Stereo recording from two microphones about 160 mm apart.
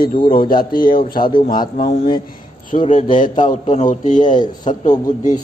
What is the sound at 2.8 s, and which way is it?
Speech, 40° left (ahead or behind).